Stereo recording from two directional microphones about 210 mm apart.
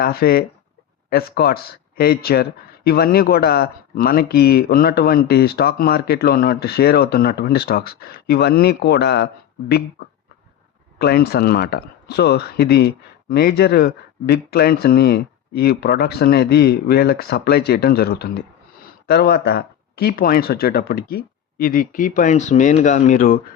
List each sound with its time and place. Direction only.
0.0 s speech: 45° left (ahead or behind)
10.9 s speech: 50° left (ahead or behind)